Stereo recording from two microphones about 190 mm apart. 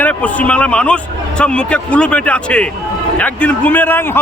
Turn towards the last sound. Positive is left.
turn(degrees=10)  # may be behind; listen again after turning